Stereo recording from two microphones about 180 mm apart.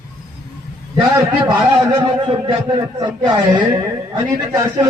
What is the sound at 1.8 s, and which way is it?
A man's voice, 25° right (ahead or behind).